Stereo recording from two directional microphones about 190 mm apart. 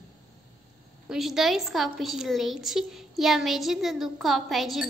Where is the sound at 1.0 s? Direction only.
Centre (ahead or behind).